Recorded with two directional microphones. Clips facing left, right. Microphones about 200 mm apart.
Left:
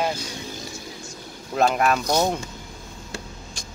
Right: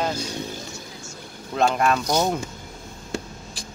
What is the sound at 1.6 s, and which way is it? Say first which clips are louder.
Speech: even; 5° left (ahead or behind).